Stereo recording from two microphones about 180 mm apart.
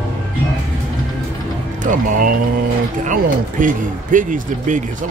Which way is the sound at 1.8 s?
45° right (ahead or behind).